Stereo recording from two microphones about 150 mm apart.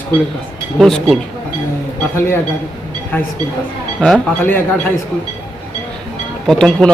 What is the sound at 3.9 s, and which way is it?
Speech, 5° left (ahead or behind).